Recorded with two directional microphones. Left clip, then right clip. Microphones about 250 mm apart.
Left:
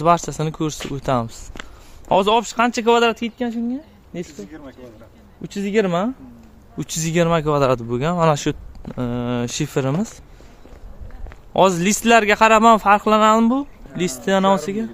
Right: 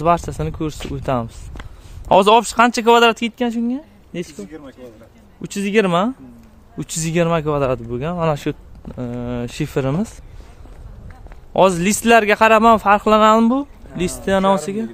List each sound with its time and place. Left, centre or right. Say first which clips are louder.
0.0 s a man's voice: even; centre
2.0 s speech: right 5 dB; centre
4.5 s speech: right 2 dB; right
5.4 s speech: right 2 dB; right
6.8 s a man's voice: even; centre
11.5 s a man's voice: right 1 dB; centre